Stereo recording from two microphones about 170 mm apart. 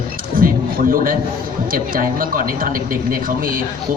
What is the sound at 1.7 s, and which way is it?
A man's voice, 55° right (ahead or behind).